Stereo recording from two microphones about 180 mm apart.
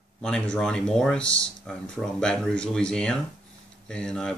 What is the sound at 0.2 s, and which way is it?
Speech, 5° left (ahead or behind).